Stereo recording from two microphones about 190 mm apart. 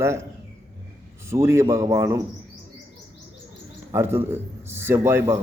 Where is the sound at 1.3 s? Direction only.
15° right (ahead or behind).